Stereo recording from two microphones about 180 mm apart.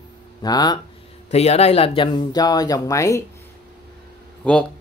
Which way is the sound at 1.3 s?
35° left (ahead or behind).